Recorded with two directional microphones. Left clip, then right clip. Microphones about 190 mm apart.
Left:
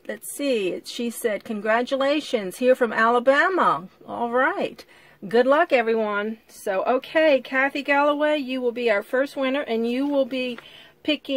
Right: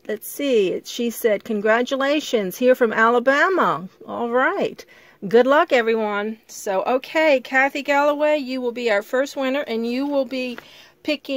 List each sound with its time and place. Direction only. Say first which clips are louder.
0.0 s speech: right 3 dB; 50° right (ahead or behind); by 10.6 s 30° right (ahead or behind)